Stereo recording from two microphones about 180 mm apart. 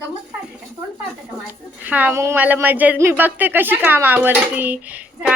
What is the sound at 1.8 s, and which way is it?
A woman's voice, 10° right (ahead or behind).